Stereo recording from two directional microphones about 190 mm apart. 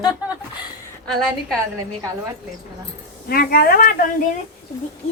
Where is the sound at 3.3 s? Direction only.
50° left (ahead or behind).